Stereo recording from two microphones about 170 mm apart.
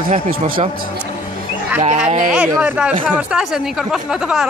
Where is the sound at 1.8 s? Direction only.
45° right (ahead or behind).